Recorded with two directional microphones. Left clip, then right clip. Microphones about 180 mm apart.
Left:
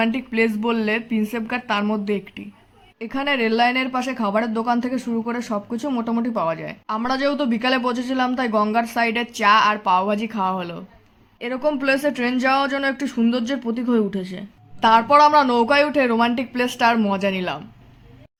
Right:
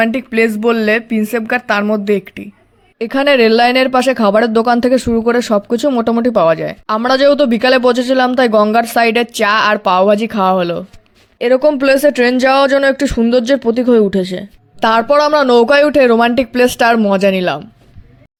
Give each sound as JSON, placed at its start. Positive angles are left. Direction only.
{"t": 0.0, "sound": "speech", "side_deg": -35}
{"t": 3.0, "sound": "speech", "side_deg": -50}